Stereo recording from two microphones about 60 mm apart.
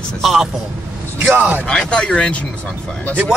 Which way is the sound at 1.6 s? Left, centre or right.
Centre.